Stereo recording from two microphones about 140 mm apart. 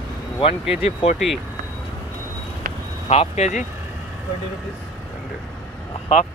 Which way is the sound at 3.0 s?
50° left (ahead or behind).